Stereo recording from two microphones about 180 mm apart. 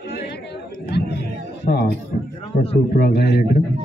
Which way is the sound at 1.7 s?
50° left (ahead or behind).